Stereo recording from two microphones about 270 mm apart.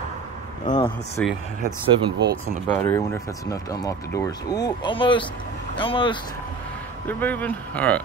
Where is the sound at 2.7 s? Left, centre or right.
Centre.